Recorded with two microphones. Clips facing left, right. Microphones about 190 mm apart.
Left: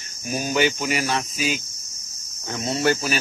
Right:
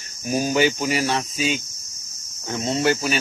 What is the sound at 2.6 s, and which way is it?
Speech, 25° right (ahead or behind).